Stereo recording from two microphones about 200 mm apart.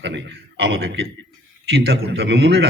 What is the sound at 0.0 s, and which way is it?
A man's voice, 60° right (ahead or behind).